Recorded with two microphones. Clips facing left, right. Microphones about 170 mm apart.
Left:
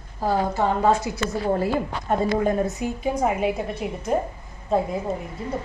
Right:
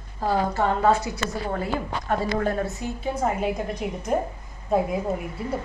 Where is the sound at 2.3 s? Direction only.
15° left (ahead or behind).